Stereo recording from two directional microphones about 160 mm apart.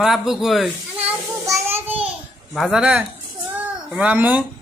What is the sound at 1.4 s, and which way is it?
Child singing, 20° right (ahead or behind).